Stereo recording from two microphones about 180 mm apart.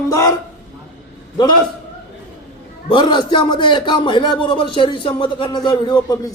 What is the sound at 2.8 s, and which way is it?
A man's voice, 25° left (ahead or behind).